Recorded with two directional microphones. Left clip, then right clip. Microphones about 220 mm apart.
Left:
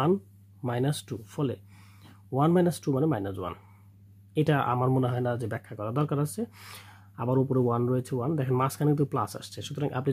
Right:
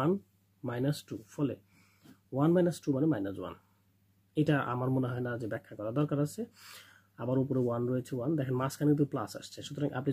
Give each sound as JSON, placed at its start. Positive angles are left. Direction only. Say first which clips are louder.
{"t": 0.6, "sound": "speech", "louder": "left 5 dB", "side_deg": 35}